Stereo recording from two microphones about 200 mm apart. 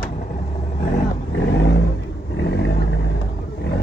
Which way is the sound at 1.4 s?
60° left (ahead or behind).